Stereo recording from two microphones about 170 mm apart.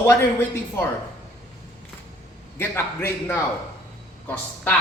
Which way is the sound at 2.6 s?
15° left (ahead or behind).